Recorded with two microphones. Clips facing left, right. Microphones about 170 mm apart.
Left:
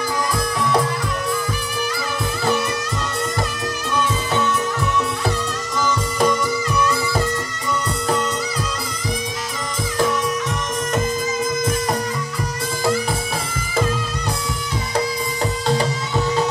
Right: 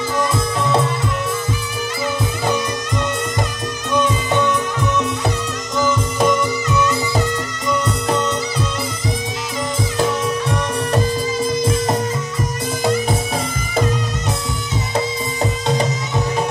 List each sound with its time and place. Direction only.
0.2 s music: 25° right (ahead or behind)
3.9 s music: 15° right (ahead or behind)
5.8 s music: 20° right (ahead or behind)
9.9 s music: 25° right (ahead or behind)
11.6 s music: 25° right (ahead or behind)